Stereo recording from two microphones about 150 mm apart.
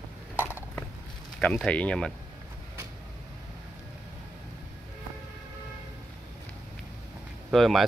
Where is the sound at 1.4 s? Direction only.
5° left (ahead or behind).